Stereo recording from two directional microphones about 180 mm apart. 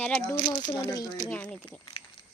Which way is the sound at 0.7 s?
20° left (ahead or behind).